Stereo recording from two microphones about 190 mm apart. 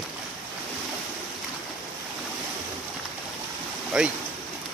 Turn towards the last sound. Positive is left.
turn(degrees=-5)  # may be behind; listen again after turning